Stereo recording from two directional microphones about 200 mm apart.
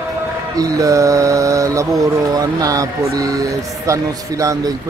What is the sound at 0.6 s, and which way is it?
Speech, 15° right (ahead or behind).